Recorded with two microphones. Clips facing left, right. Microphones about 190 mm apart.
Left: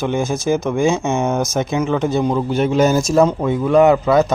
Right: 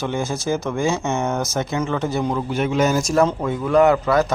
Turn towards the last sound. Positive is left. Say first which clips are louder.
# left 3 dB
turn(degrees=20)  # may be behind; listen again after turning